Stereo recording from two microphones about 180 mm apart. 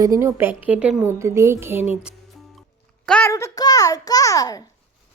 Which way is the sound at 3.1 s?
10° left (ahead or behind).